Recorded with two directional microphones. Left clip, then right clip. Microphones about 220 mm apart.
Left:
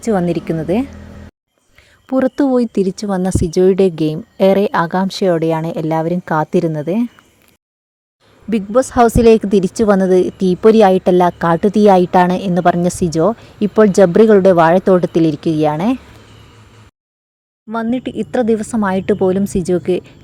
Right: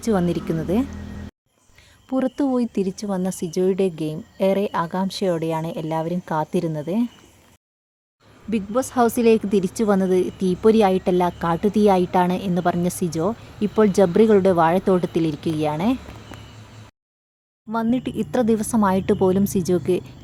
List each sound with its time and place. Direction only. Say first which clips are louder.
0.0 s a woman's voice: left 6 dB; 25° left (ahead or behind)
2.0 s speech: left 8 dB; 35° left (ahead or behind)
8.4 s speech: left 9 dB; 30° left (ahead or behind)
17.7 s a woman's voice: left 4 dB; 15° left (ahead or behind)